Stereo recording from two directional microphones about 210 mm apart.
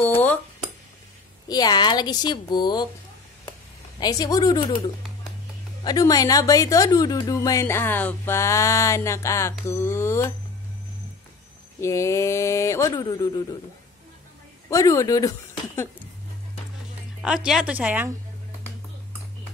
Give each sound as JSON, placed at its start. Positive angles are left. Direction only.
{"t": 0.0, "sound": "a sound", "side_deg": 5}
{"t": 1.5, "sound": "a woman's voice", "side_deg": 20}
{"t": 4.0, "sound": "speech", "side_deg": 20}
{"t": 5.9, "sound": "speech", "side_deg": 15}
{"t": 11.8, "sound": "speech", "side_deg": 15}
{"t": 14.7, "sound": "speech", "side_deg": 15}
{"t": 17.5, "sound": "a woman's voice", "side_deg": -5}